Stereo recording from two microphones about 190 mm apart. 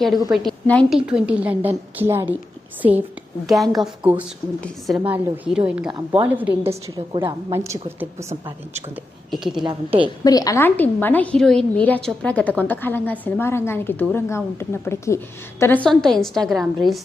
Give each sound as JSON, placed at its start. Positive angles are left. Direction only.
{"t": 0.3, "sound": "a woman's voice", "side_deg": 5}
{"t": 3.4, "sound": "a woman's voice", "side_deg": 0}
{"t": 6.9, "sound": "a woman's voice", "side_deg": -25}
{"t": 8.3, "sound": "a woman's voice", "side_deg": -35}
{"t": 9.3, "sound": "a woman's voice", "side_deg": 0}
{"t": 9.6, "sound": "a woman's voice", "side_deg": -25}
{"t": 10.2, "sound": "a woman's voice", "side_deg": 20}